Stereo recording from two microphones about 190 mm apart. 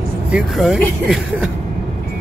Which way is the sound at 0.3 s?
Centre (ahead or behind).